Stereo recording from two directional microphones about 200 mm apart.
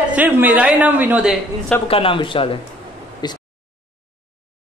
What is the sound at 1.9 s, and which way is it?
Speech, 25° left (ahead or behind).